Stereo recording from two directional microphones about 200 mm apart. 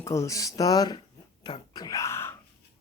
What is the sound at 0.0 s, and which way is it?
Speech, 15° left (ahead or behind).